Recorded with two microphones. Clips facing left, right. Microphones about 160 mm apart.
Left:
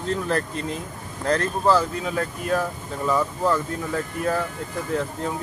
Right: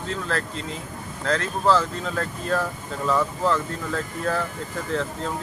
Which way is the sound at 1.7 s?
10° left (ahead or behind).